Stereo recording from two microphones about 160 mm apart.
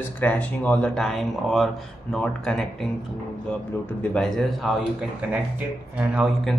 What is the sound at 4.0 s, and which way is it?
Speech, 5° left (ahead or behind).